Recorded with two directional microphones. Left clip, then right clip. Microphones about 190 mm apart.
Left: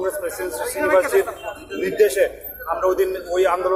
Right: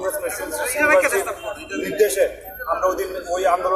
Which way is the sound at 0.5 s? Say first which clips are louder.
Right 2 dB; 25° left (ahead or behind).